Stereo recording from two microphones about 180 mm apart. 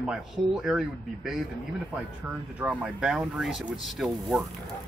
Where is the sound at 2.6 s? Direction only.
5° right (ahead or behind).